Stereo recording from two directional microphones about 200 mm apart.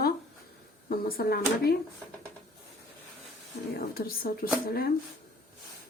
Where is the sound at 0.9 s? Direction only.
50° left (ahead or behind).